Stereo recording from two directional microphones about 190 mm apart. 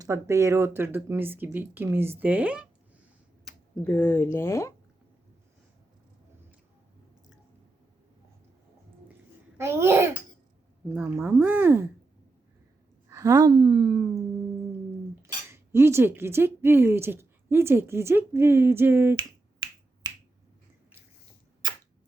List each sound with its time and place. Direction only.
0.0 s speech: 15° right (ahead or behind)
3.4 s speech: 5° left (ahead or behind)
9.6 s speech: 15° right (ahead or behind)
13.1 s a woman's voice: 15° right (ahead or behind)
15.4 s speech: 15° right (ahead or behind)
19.1 s finger snapping: 25° right (ahead or behind)
21.6 s arrow: 25° right (ahead or behind)